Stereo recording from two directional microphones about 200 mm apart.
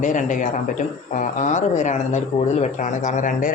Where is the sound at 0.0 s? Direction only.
40° left (ahead or behind).